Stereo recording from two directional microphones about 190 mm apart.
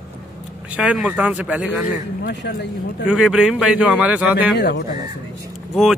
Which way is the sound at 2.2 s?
65° left (ahead or behind).